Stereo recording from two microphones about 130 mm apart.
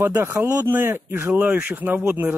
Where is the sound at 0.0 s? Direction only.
20° right (ahead or behind).